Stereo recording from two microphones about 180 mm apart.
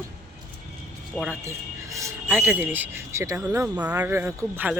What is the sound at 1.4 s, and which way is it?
Speech, 15° right (ahead or behind).